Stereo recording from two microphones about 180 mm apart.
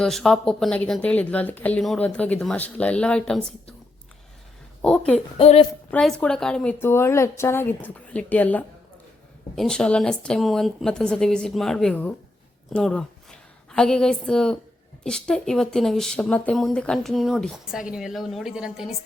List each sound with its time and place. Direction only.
0.0 s speech: centre (ahead or behind)
4.8 s speech: 5° left (ahead or behind)
5.4 s a woman's voice: 35° left (ahead or behind)
5.9 s a woman's voice: 5° left (ahead or behind)